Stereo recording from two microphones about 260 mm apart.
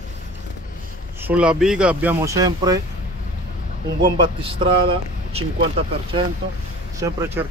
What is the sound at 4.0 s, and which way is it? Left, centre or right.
A man's voice, centre.